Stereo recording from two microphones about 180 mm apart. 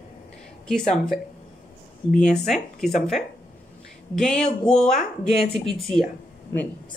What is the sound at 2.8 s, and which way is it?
Speech, centre (ahead or behind).